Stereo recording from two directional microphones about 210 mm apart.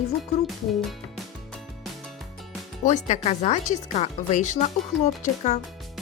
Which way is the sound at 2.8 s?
35° left (ahead or behind).